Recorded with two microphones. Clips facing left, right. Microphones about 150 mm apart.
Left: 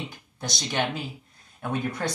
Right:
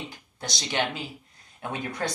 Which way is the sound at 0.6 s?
20° right (ahead or behind).